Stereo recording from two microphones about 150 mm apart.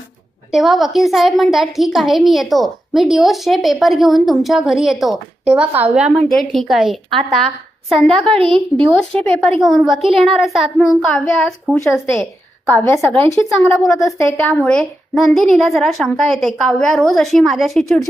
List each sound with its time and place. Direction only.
0.5 s a woman's voice: centre (ahead or behind)
8.4 s speech: 35° right (ahead or behind)
9.0 s a woman's voice: 5° left (ahead or behind)
14.4 s a woman's voice: 10° left (ahead or behind)